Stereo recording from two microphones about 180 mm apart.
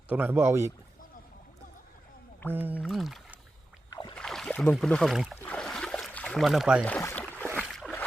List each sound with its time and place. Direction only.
0.1 s speech: 10° right (ahead or behind)
2.5 s speech: 10° right (ahead or behind)
2.8 s music: centre (ahead or behind)
3.8 s rowboat: 25° left (ahead or behind)
4.1 s speech: 5° left (ahead or behind)
5.4 s boat: 5° left (ahead or behind)
6.8 s boat: 10° left (ahead or behind)